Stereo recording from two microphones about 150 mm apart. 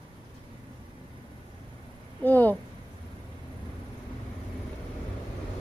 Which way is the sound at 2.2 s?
10° left (ahead or behind).